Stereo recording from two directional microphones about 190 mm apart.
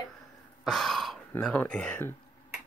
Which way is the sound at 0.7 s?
Centre (ahead or behind).